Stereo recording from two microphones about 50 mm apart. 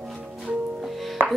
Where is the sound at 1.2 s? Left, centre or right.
Right.